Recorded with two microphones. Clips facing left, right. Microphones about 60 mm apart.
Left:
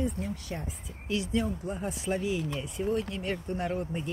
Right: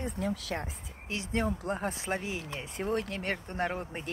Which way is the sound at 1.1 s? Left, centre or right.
Right.